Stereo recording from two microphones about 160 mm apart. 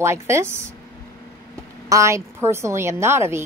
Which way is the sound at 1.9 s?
20° right (ahead or behind).